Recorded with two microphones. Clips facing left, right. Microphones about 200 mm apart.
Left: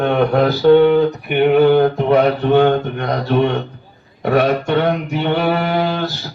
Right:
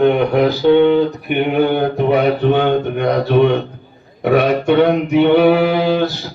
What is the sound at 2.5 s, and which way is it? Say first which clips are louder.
Mantra: left 2 dB; 50° left (ahead or behind).